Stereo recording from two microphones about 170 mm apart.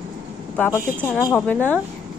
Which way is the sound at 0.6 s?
10° left (ahead or behind).